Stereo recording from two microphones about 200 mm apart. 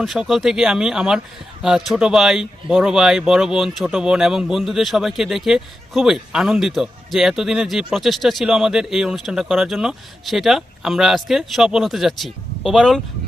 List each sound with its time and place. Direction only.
0.0 s speech: centre (ahead or behind)